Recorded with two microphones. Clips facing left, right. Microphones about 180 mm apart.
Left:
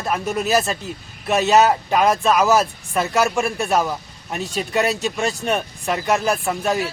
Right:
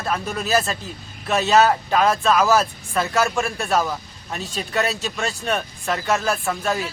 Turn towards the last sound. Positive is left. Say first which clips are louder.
# left 2 dB
turn(degrees=20)  # may be behind; listen again after turning